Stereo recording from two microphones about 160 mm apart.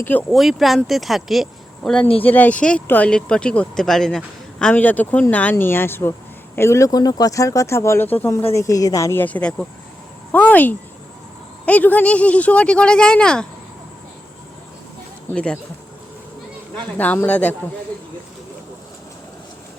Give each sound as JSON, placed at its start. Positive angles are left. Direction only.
{"t": 0.0, "sound": "speech", "side_deg": 10}
{"t": 0.3, "sound": "speech", "side_deg": 0}
{"t": 15.3, "sound": "speech", "side_deg": 5}
{"t": 16.7, "sound": "speech", "side_deg": 10}